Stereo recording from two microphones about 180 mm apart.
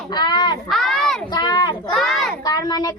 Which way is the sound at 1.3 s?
25° left (ahead or behind).